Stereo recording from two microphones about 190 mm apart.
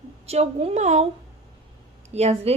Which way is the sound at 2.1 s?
35° right (ahead or behind).